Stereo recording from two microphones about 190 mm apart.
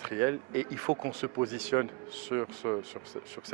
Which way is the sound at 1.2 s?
15° right (ahead or behind).